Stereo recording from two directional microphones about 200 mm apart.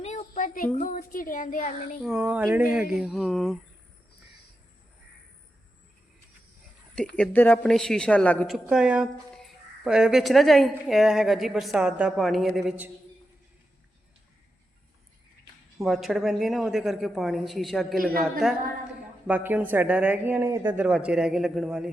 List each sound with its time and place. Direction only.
0.0 s speech: 35° left (ahead or behind)
2.0 s a woman's voice: 5° right (ahead or behind)
6.9 s a woman's voice: 5° left (ahead or behind)
15.8 s a woman's voice: centre (ahead or behind)